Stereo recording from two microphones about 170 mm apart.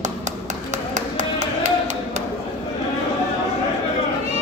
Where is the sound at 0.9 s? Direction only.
45° right (ahead or behind).